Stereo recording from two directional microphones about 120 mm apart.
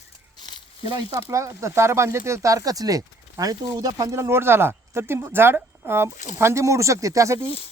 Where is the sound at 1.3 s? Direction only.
25° right (ahead or behind).